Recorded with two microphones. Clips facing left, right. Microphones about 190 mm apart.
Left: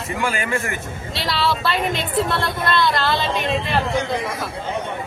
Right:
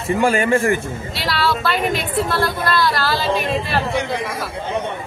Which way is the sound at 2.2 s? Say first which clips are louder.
Right 2 dB; 20° left (ahead or behind).